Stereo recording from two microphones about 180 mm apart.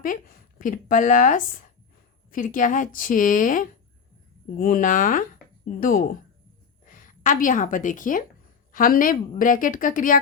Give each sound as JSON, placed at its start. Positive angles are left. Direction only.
{"t": 0.0, "sound": "a woman's voice", "side_deg": 50}